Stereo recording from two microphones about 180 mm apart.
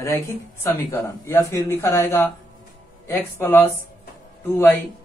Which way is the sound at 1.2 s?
15° left (ahead or behind).